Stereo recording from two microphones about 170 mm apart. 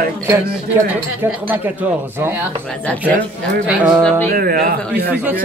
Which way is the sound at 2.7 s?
10° left (ahead or behind).